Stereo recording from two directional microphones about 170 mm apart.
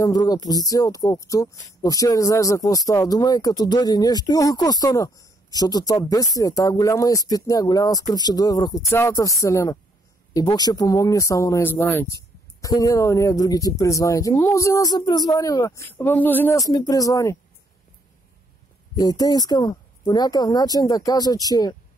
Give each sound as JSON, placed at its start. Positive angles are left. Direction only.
{"t": 0.0, "sound": "speech", "side_deg": 20}
{"t": 18.9, "sound": "speech", "side_deg": 20}